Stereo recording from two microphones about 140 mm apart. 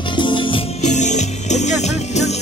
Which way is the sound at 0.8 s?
60° left (ahead or behind).